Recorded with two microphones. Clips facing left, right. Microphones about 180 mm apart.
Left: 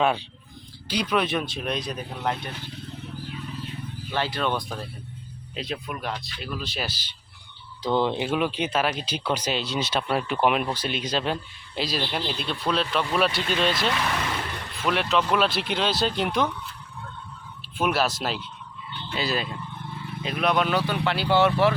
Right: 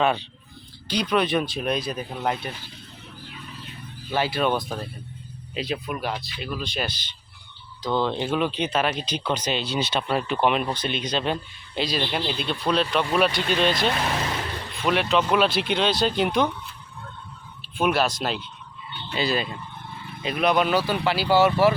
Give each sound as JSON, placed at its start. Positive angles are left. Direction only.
{"t": 0.0, "sound": "speech", "side_deg": 5}
{"t": 4.1, "sound": "speech", "side_deg": -10}
{"t": 7.8, "sound": "speech", "side_deg": 20}
{"t": 13.8, "sound": "speech", "side_deg": -35}
{"t": 14.8, "sound": "speech", "side_deg": 0}
{"t": 17.7, "sound": "speech", "side_deg": 5}